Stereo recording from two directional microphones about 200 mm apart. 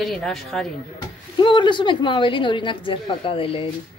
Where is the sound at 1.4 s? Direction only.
25° left (ahead or behind).